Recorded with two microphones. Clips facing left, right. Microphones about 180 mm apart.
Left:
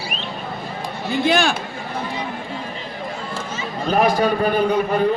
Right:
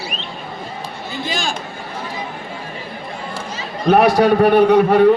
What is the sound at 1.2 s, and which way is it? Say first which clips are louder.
Speech: left 6 dB; 60° left (ahead or behind).